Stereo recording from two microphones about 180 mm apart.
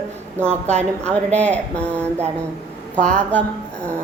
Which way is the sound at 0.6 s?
40° right (ahead or behind).